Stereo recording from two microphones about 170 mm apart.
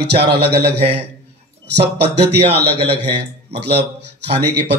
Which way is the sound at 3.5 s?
75° right (ahead or behind).